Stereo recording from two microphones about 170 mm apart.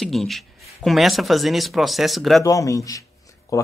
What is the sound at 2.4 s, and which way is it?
Speech, 20° left (ahead or behind).